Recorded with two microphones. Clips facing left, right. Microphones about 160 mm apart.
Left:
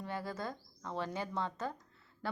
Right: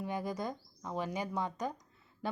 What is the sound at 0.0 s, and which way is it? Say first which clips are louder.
Speech: right 3 dB; 15° right (ahead or behind).